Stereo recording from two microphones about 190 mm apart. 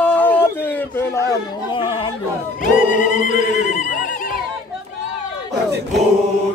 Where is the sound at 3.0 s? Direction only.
40° left (ahead or behind).